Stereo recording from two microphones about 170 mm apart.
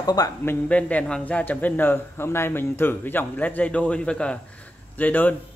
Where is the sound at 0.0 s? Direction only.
20° left (ahead or behind).